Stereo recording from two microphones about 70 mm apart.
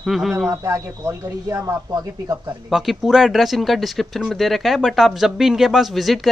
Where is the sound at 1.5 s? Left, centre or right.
Right.